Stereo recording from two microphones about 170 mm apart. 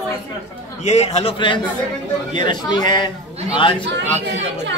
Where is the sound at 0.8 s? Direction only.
40° left (ahead or behind).